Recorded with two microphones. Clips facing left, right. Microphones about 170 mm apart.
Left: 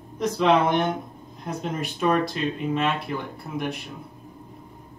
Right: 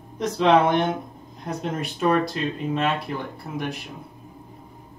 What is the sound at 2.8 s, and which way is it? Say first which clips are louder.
Speech: right 1 dB; centre (ahead or behind).